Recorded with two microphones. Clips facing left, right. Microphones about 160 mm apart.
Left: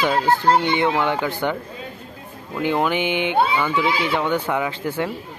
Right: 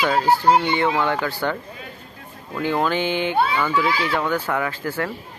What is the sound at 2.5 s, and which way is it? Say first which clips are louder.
Speech: left 1 dB; 15° left (ahead or behind).